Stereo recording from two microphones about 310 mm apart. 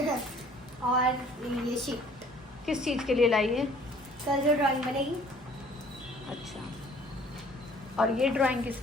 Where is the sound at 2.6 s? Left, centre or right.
Centre.